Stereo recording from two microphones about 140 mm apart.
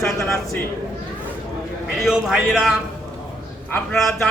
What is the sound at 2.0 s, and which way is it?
Speech, centre (ahead or behind).